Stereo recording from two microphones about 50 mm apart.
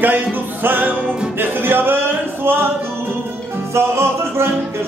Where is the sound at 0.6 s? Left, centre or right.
Right.